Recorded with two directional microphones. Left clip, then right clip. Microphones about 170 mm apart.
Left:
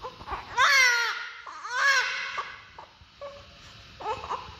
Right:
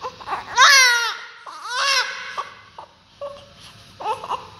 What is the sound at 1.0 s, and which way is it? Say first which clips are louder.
Crying: right 4 dB; 20° right (ahead or behind).